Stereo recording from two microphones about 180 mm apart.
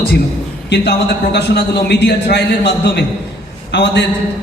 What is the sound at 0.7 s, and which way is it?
A man's voice, 65° left (ahead or behind).